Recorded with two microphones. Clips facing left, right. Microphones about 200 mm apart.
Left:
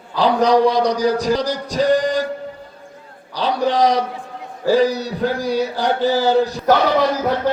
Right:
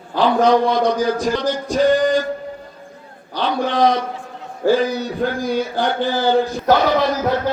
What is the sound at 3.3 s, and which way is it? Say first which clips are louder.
A man's voice: left 1 dB; 35° left (ahead or behind).